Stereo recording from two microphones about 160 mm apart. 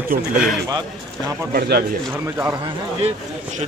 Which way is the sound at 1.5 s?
75° right (ahead or behind).